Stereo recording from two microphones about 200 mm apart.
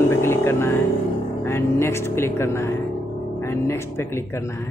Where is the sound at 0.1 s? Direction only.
15° left (ahead or behind).